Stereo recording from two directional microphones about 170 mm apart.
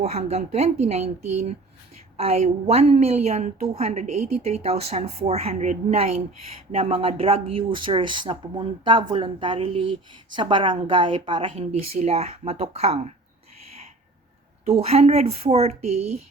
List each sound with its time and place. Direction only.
0.0 s speech: 40° right (ahead or behind)
14.6 s speech: 35° right (ahead or behind)